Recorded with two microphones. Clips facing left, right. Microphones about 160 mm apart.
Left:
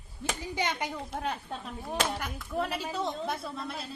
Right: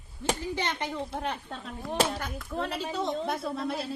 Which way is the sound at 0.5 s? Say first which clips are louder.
Even; 10° left (ahead or behind).